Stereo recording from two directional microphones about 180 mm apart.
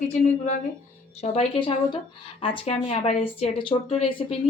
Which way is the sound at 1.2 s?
35° left (ahead or behind).